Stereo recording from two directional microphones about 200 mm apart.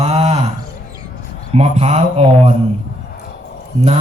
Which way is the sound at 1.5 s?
30° right (ahead or behind).